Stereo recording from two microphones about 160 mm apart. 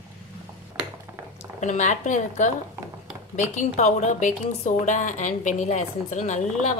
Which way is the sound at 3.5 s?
45° left (ahead or behind).